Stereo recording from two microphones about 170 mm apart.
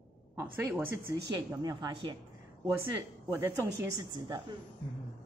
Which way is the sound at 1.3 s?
25° right (ahead or behind).